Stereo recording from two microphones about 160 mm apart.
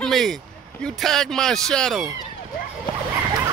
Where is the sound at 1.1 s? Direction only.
5° left (ahead or behind).